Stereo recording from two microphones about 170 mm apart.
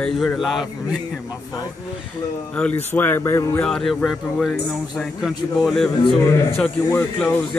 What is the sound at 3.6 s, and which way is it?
Speech, 5° left (ahead or behind).